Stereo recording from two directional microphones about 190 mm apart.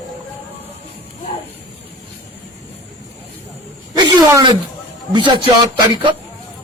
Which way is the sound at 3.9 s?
20° right (ahead or behind).